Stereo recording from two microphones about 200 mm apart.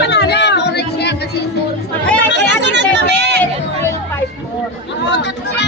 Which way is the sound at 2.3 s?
60° right (ahead or behind).